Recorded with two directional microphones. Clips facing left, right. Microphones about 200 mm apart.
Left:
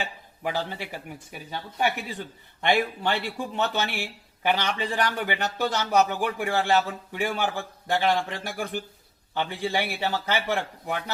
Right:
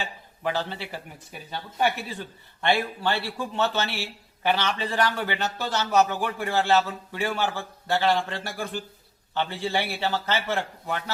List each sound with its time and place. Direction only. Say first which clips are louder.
0.5 s a man's voice: even; 15° left (ahead or behind)